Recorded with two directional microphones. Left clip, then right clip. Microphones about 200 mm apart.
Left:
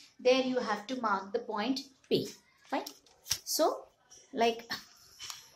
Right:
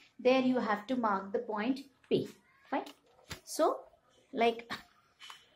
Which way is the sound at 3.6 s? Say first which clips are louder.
Right 1 dB; centre (ahead or behind).